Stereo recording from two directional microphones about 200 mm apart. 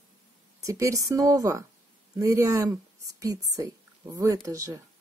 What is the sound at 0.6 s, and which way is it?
A woman's voice, 15° right (ahead or behind).